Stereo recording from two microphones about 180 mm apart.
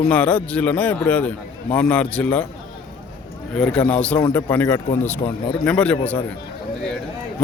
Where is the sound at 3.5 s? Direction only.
5° left (ahead or behind).